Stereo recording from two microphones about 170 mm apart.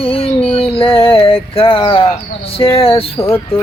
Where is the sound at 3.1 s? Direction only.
15° left (ahead or behind).